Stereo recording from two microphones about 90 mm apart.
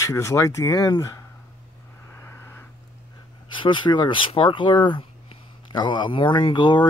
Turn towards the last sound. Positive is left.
turn(degrees=60)  # may be behind; listen again after turning